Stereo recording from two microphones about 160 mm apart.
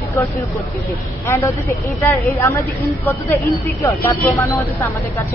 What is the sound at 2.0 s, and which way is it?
Speech, 15° left (ahead or behind).